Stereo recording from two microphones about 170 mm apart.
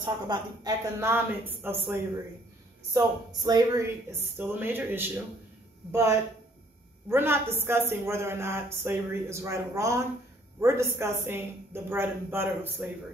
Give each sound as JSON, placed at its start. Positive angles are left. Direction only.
{"t": 0.0, "sound": "a woman's voice", "side_deg": -20}
{"t": 2.9, "sound": "a woman's voice", "side_deg": -25}